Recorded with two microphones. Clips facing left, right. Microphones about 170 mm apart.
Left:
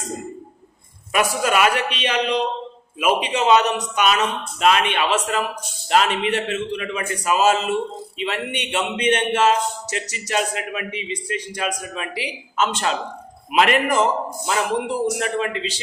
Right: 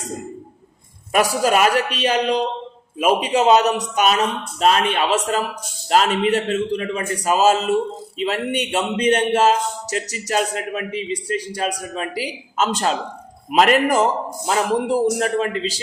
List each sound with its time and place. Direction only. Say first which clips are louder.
1.1 s a man's voice: right 3 dB; 35° right (ahead or behind)